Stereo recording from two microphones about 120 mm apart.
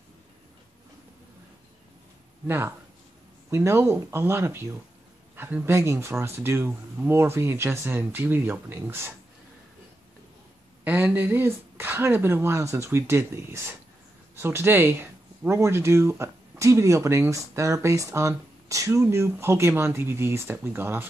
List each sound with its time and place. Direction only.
2.4 s speech: 20° right (ahead or behind)
10.8 s speech: 15° right (ahead or behind)